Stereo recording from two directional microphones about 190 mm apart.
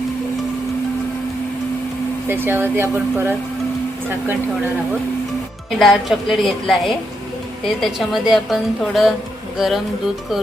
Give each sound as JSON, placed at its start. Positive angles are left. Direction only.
{"t": 2.2, "sound": "speech", "side_deg": -10}
{"t": 5.8, "sound": "a woman's voice", "side_deg": 0}